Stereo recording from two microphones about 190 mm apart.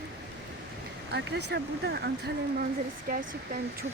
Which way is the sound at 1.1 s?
60° right (ahead or behind).